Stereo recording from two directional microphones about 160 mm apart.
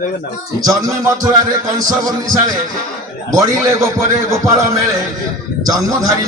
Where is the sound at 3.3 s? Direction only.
20° right (ahead or behind).